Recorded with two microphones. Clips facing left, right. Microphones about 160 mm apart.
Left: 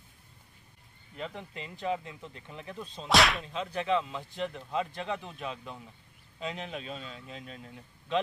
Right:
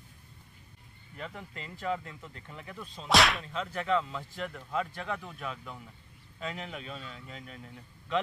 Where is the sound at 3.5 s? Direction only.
20° left (ahead or behind).